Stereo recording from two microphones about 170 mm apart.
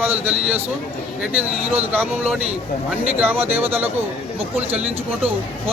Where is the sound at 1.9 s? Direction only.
5° right (ahead or behind).